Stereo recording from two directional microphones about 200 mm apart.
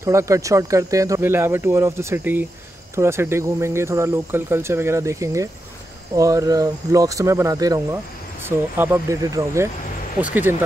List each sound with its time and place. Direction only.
0.0 s speech: 15° right (ahead or behind)